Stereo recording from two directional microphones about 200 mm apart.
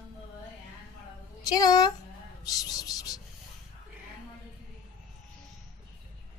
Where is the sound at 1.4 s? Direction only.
20° left (ahead or behind).